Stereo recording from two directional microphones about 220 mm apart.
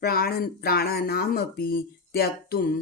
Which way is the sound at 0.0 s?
45° left (ahead or behind).